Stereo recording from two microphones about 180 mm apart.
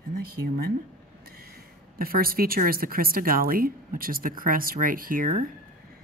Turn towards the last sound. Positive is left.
turn(degrees=-50)  # may be behind; listen again after turning